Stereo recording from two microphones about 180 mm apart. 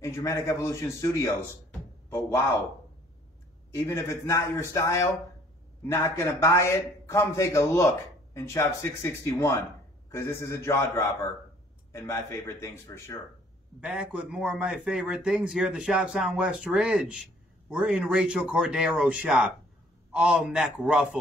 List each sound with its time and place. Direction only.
0.0 s a man's voice: 15° left (ahead or behind)
1.7 s a sound: 15° left (ahead or behind)
3.7 s a man's voice: 15° left (ahead or behind)
13.7 s a man's voice: 5° right (ahead or behind)